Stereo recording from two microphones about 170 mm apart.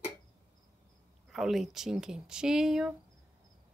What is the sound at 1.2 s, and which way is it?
A woman's voice, centre (ahead or behind).